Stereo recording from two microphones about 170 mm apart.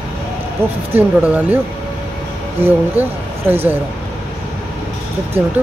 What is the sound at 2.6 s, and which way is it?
Speech, 10° right (ahead or behind).